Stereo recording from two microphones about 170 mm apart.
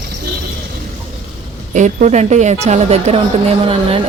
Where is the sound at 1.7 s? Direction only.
45° right (ahead or behind).